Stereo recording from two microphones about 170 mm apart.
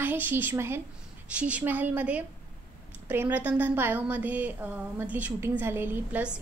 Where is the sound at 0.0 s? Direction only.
10° right (ahead or behind).